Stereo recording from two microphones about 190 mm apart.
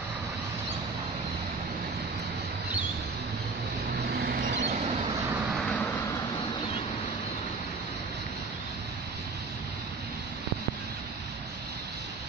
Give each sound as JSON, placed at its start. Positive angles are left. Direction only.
{"t": 4.2, "sound": "vehicle", "side_deg": -55}
{"t": 5.6, "sound": "vehicle", "side_deg": 5}